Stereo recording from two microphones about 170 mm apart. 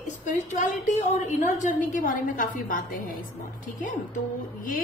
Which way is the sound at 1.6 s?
50° left (ahead or behind).